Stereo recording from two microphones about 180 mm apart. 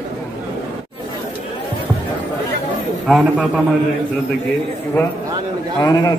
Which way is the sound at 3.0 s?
5° right (ahead or behind).